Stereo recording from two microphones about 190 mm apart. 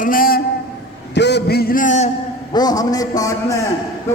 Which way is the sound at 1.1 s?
65° left (ahead or behind).